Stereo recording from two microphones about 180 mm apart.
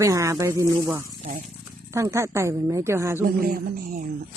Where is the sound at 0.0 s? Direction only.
15° right (ahead or behind).